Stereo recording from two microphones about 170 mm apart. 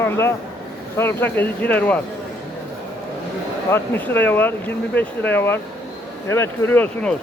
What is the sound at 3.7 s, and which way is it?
Speech, 15° left (ahead or behind).